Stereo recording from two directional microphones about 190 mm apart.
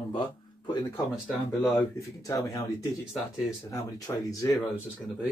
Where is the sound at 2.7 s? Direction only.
Centre (ahead or behind).